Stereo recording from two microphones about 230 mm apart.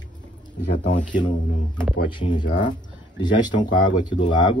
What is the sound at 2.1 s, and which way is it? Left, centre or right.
Speech, left.